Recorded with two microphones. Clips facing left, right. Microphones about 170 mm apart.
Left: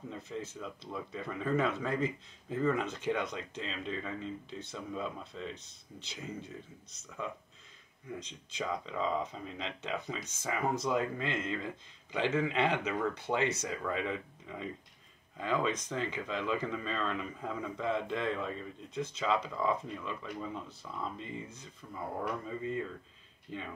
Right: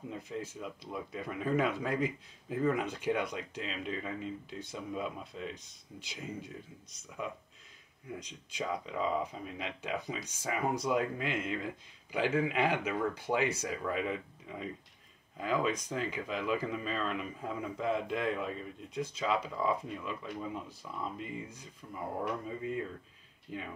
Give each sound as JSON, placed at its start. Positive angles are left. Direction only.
{"t": 0.1, "sound": "speech", "side_deg": -10}